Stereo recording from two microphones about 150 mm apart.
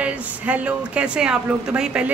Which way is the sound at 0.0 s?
10° right (ahead or behind).